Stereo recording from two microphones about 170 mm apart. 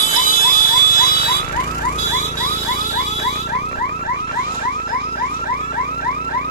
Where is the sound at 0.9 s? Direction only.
60° left (ahead or behind).